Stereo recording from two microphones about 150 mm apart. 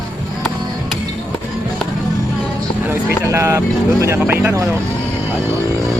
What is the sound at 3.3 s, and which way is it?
Vehicle, 20° right (ahead or behind).